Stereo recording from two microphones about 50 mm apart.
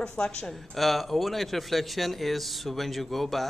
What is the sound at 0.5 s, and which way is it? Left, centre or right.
Speech, centre.